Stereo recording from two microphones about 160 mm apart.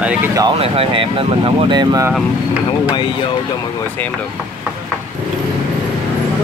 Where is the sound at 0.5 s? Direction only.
35° right (ahead or behind).